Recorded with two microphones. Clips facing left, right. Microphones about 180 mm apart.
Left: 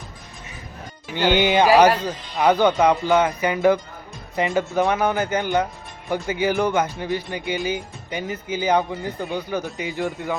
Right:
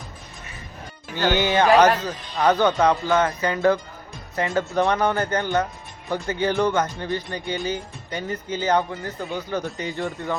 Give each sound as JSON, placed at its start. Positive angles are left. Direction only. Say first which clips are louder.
{"t": 1.1, "sound": "speech", "louder": "left 2 dB", "side_deg": 15}